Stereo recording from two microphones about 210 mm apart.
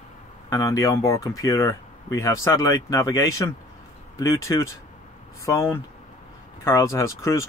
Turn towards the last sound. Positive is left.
turn(degrees=15)  # may be behind; listen again after turning